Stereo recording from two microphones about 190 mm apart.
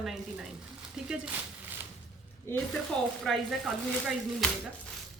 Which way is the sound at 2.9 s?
5° left (ahead or behind).